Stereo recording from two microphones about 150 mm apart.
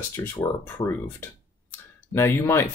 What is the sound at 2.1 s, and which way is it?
Speech, 15° left (ahead or behind).